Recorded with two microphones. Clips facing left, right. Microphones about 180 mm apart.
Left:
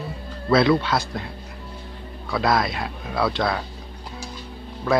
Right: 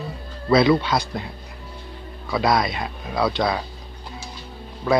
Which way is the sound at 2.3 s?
Centre (ahead or behind).